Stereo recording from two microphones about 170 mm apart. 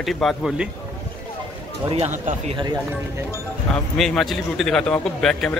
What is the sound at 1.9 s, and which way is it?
Speech, 40° right (ahead or behind).